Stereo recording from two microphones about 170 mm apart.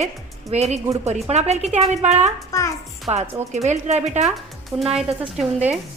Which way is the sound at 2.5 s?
20° left (ahead or behind).